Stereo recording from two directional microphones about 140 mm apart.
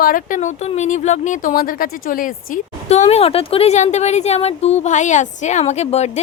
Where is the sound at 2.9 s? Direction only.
50° left (ahead or behind).